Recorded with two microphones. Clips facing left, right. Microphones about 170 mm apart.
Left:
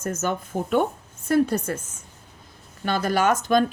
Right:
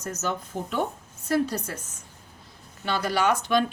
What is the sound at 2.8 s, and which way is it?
Speech, 45° left (ahead or behind).